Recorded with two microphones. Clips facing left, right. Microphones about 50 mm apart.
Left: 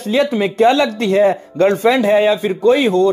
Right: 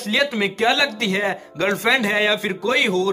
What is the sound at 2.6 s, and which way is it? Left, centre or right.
Speech, left.